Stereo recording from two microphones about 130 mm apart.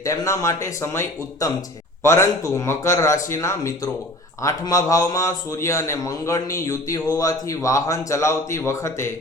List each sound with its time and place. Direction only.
0.0 s speech: 25° left (ahead or behind)